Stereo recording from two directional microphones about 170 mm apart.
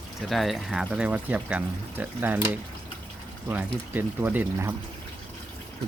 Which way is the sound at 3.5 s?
10° right (ahead or behind).